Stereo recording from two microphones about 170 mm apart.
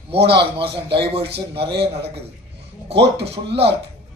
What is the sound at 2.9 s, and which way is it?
Speech, 85° right.